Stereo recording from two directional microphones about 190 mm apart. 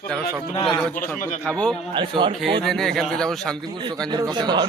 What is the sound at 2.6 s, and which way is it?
Speech, centre (ahead or behind).